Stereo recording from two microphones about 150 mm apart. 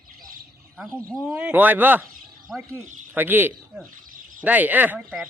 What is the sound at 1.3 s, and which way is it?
Speech, 10° right (ahead or behind).